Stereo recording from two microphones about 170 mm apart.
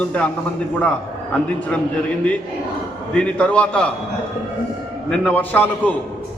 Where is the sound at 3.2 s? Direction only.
5° left (ahead or behind).